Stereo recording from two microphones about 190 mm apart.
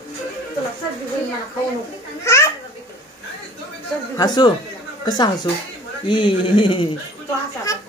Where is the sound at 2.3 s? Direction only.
15° left (ahead or behind).